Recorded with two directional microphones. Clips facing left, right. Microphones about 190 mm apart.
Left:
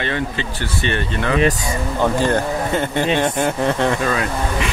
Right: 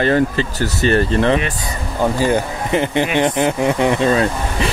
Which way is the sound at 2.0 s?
10° right (ahead or behind).